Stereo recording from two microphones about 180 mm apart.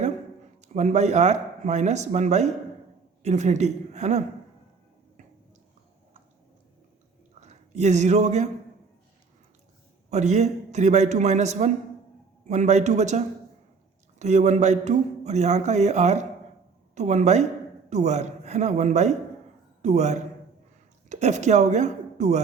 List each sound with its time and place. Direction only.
0.6 s a man's voice: 40° right (ahead or behind)
7.3 s speech: 40° right (ahead or behind)
10.1 s a man's voice: 40° right (ahead or behind)